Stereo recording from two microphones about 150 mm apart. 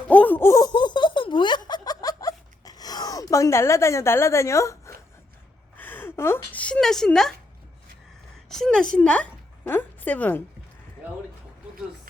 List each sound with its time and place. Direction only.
0.1 s laughter: 10° left (ahead or behind)
5.7 s a sound: 15° left (ahead or behind)
8.4 s a woman's voice: 5° left (ahead or behind)